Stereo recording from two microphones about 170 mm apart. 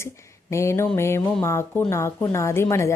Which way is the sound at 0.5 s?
15° left (ahead or behind).